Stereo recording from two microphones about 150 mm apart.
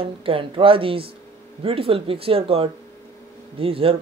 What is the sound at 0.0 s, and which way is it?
A man's voice, 35° right (ahead or behind).